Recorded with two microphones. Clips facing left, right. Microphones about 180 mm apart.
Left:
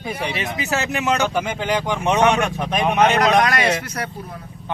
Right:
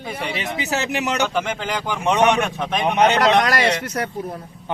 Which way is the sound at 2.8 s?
25° right (ahead or behind).